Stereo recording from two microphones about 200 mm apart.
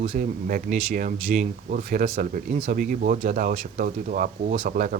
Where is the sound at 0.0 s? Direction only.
40° right (ahead or behind).